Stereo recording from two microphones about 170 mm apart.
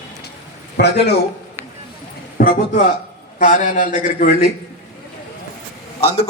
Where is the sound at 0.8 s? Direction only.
80° left.